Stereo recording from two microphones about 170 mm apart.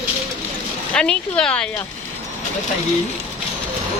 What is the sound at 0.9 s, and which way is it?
Speech, 5° left (ahead or behind).